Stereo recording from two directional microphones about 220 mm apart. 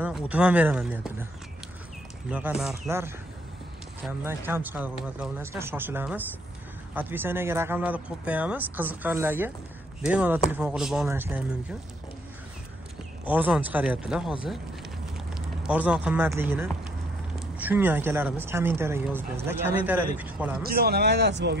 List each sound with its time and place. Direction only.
0.0 s speech: 5° right (ahead or behind)
2.3 s speech: 5° right (ahead or behind)
13.2 s speech: 5° right (ahead or behind)
20.6 s speech: 45° right (ahead or behind)